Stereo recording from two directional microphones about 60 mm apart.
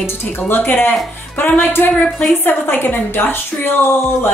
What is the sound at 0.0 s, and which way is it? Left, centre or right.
Speech, left.